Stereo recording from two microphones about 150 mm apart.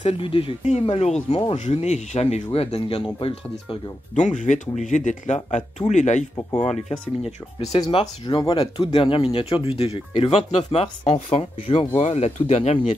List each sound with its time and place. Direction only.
0.0 s speech: 40° left (ahead or behind)
4.1 s speech: 55° left (ahead or behind)
7.8 s speech: 30° left (ahead or behind)